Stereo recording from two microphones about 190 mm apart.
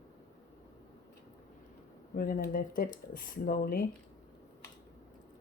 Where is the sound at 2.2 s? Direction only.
50° left (ahead or behind).